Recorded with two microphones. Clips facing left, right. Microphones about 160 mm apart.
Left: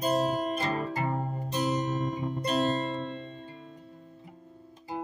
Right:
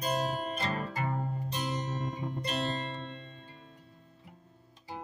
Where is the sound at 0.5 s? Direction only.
40° left (ahead or behind).